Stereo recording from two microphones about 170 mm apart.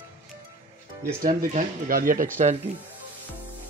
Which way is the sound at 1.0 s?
50° right (ahead or behind).